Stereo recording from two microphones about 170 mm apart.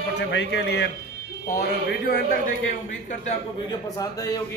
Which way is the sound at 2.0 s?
55° left (ahead or behind).